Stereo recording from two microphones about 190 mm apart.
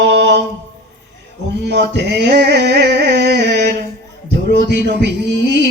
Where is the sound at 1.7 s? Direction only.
60° right (ahead or behind).